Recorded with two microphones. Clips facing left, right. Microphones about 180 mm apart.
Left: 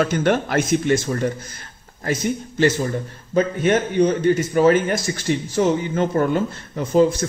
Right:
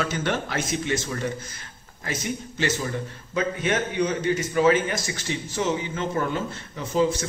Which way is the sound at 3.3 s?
45° left (ahead or behind).